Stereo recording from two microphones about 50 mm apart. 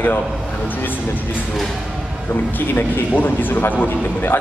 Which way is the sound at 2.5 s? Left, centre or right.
Left.